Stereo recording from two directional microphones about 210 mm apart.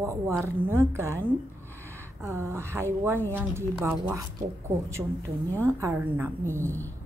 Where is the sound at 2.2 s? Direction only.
15° right (ahead or behind).